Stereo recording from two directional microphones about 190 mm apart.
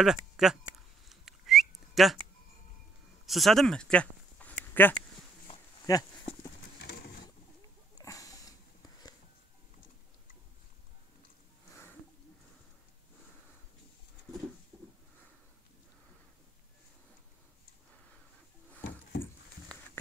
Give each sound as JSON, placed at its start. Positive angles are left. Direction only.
{"t": 0.0, "sound": "speech", "side_deg": 0}
{"t": 1.0, "sound": "whistling", "side_deg": 0}
{"t": 3.3, "sound": "speech", "side_deg": 0}
{"t": 5.9, "sound": "a sound", "side_deg": 20}
{"t": 6.8, "sound": "a sound", "side_deg": 55}
{"t": 7.9, "sound": "sniff", "side_deg": 15}